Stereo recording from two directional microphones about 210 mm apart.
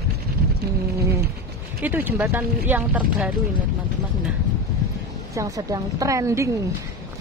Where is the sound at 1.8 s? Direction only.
10° right (ahead or behind).